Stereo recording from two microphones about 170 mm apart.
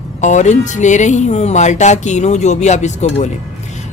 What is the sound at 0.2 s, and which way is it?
Speech, 45° left (ahead or behind).